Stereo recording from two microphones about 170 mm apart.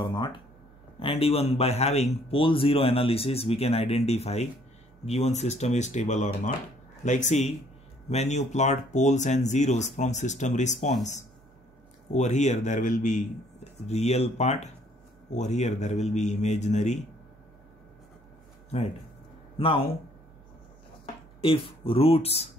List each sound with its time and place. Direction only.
0.0 s a man's voice: 25° left (ahead or behind); by 10.9 s 45° left (ahead or behind)
12.1 s a man's voice: 45° left (ahead or behind)
19.6 s a man's voice: 35° left (ahead or behind)
21.4 s a man's voice: 30° left (ahead or behind)